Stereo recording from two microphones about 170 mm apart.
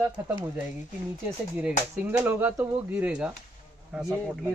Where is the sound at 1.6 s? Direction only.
10° right (ahead or behind).